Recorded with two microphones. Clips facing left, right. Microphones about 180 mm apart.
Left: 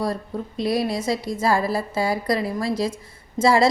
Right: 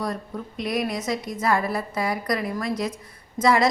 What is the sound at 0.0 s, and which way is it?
A woman's voice, 30° left (ahead or behind).